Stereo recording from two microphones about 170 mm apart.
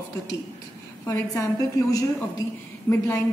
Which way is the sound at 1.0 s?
20° left (ahead or behind).